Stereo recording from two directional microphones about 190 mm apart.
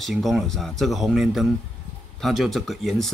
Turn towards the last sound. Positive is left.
turn(degrees=0)  # may be behind; listen again after turning